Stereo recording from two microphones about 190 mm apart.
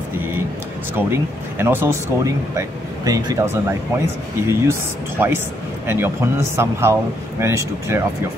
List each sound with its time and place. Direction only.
0.9 s speech: 10° right (ahead or behind)